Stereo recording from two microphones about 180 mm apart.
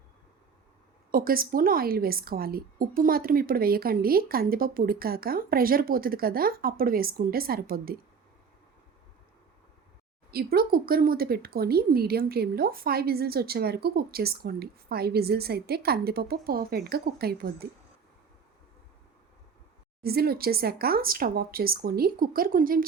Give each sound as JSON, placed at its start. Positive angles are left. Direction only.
{"t": 1.1, "sound": "a woman's voice", "side_deg": -55}
{"t": 10.3, "sound": "a woman's voice", "side_deg": -55}
{"t": 20.0, "sound": "a woman's voice", "side_deg": -60}